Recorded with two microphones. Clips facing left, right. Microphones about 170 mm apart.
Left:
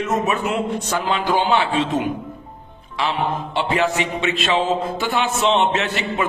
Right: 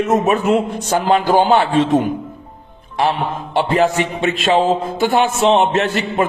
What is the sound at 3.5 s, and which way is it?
A man's voice, 45° right (ahead or behind).